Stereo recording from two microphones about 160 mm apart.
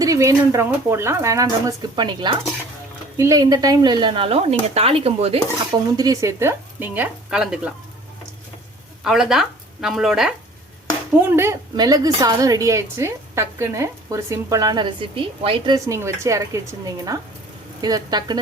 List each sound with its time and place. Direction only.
0.0 s a woman's voice: 20° right (ahead or behind); by 5.4 s 40° right (ahead or behind)
5.7 s speech: 25° right (ahead or behind); by 7.7 s 5° right (ahead or behind)
9.0 s speech: 5° right (ahead or behind)
11.2 s a woman's voice: 15° right (ahead or behind)